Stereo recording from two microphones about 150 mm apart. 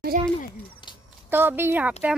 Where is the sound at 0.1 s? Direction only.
70° right (ahead or behind).